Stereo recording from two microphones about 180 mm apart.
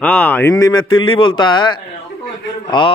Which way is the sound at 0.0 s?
5° left (ahead or behind).